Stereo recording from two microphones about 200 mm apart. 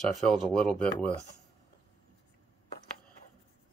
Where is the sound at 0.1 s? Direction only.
Centre (ahead or behind).